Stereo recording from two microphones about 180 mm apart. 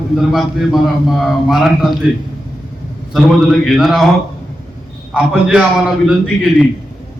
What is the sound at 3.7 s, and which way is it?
Speech, centre (ahead or behind).